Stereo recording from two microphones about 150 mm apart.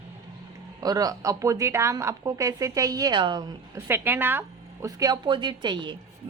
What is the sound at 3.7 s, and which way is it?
Speech, 15° right (ahead or behind).